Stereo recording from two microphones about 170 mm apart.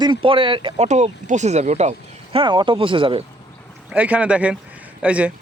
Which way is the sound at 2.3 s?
30° right (ahead or behind).